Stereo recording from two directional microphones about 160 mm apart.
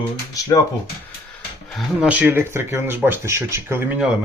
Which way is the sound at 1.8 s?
5° right (ahead or behind).